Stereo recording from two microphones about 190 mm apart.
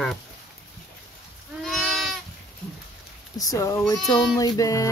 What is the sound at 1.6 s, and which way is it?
Goat, centre (ahead or behind).